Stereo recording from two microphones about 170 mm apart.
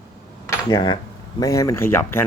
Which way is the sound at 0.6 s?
25° left (ahead or behind).